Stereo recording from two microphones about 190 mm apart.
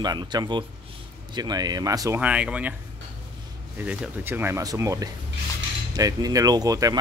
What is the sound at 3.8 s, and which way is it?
Speech, 10° right (ahead or behind).